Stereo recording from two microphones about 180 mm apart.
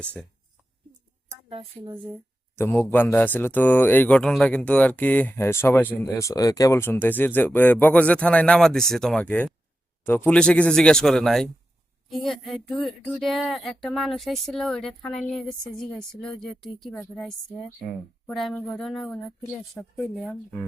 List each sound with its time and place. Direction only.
1.3 s a woman's voice: 30° right (ahead or behind)
2.6 s speech: 10° left (ahead or behind)